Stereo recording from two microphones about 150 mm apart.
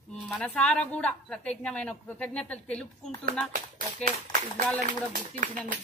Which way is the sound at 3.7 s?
65° right (ahead or behind).